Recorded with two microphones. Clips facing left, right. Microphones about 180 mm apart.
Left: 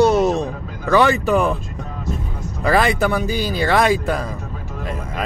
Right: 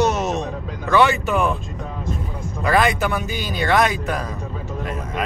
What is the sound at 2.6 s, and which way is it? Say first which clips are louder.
Speech: left 2 dB; 35° left (ahead or behind).